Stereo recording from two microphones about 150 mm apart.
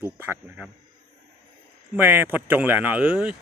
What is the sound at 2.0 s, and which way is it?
Speech, 15° right (ahead or behind).